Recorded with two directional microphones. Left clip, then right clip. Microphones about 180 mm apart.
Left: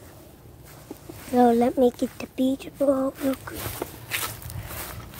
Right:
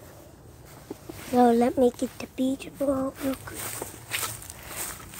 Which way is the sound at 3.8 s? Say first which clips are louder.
Left 2 dB; 10° right (ahead or behind).